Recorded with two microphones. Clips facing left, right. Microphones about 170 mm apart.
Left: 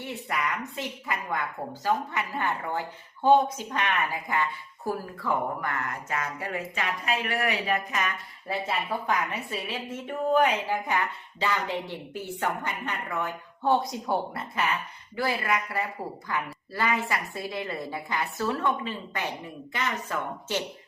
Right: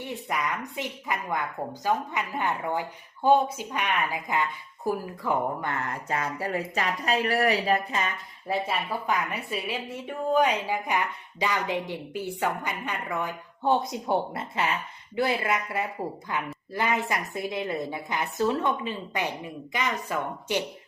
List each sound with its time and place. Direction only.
0.3 s a woman's voice: 15° right (ahead or behind)
8.6 s a woman's voice: 10° right (ahead or behind)